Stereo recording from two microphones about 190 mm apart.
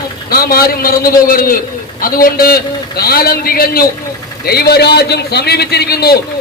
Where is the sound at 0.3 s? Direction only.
50° left (ahead or behind).